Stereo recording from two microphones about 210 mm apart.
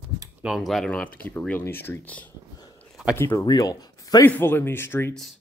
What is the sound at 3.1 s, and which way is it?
A man's voice, 10° left (ahead or behind).